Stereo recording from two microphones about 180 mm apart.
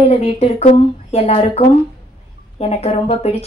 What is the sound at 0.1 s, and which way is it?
Speech, 35° left (ahead or behind).